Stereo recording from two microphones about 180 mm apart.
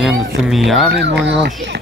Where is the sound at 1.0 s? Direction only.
70° right (ahead or behind).